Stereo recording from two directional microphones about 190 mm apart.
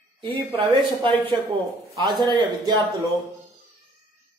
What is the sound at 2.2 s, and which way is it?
Speech, 20° right (ahead or behind).